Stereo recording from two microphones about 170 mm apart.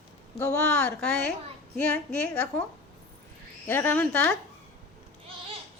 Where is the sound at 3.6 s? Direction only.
15° left (ahead or behind).